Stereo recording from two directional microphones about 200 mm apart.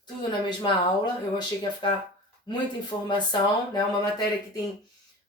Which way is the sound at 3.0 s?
20° left (ahead or behind).